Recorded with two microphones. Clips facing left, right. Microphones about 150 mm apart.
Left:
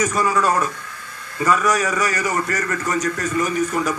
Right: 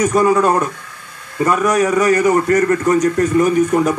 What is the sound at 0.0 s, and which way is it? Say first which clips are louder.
Speech: right 6 dB; 55° right (ahead or behind).